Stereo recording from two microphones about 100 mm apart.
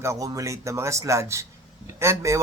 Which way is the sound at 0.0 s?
30° right (ahead or behind).